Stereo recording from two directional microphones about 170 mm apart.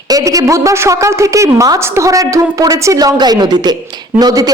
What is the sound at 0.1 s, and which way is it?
A woman's voice, 20° right (ahead or behind).